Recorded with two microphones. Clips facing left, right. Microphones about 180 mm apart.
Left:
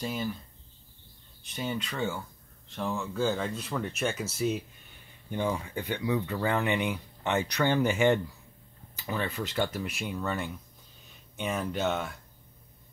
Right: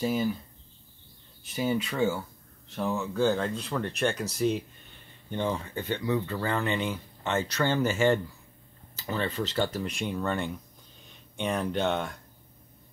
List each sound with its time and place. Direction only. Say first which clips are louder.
0.0 s speech: right 6 dB; 5° right (ahead or behind)
1.4 s speech: right 6 dB; 5° right (ahead or behind)